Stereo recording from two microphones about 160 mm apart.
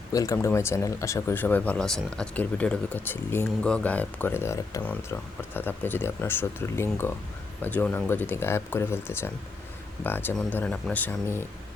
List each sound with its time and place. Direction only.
0.1 s speech: 20° left (ahead or behind)